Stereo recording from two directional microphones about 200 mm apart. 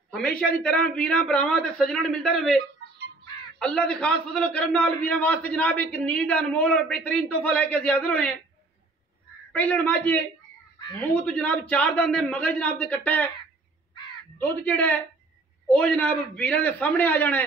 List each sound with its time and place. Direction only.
0.1 s a man's voice: 5° left (ahead or behind)
3.5 s a man's voice: 5° left (ahead or behind)
9.5 s a man's voice: 10° left (ahead or behind)
14.4 s a man's voice: 10° left (ahead or behind)